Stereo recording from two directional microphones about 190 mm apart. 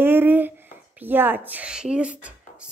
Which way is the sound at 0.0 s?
10° right (ahead or behind).